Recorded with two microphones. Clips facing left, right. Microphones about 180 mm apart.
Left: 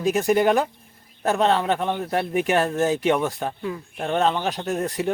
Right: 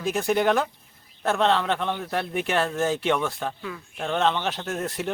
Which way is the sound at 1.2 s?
40° left (ahead or behind).